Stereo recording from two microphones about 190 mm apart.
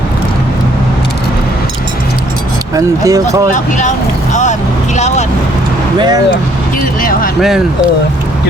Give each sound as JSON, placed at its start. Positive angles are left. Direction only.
{"t": 2.7, "sound": "speech", "side_deg": -15}
{"t": 3.5, "sound": "speech", "side_deg": 40}
{"t": 6.0, "sound": "speech", "side_deg": -20}
{"t": 7.0, "sound": "speech", "side_deg": 50}
{"t": 7.4, "sound": "speech", "side_deg": -5}